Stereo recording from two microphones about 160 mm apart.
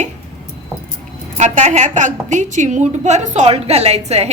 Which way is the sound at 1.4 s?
45° right (ahead or behind).